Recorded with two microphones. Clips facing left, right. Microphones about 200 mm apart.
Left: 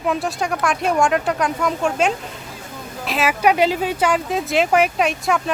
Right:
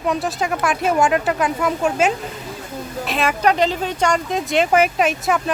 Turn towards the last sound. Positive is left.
turn(degrees=0)  # may be behind; listen again after turning